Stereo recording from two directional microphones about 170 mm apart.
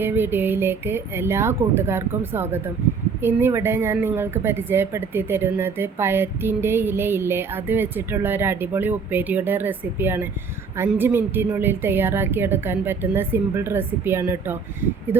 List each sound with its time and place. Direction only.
0.0 s a woman's voice: 10° right (ahead or behind)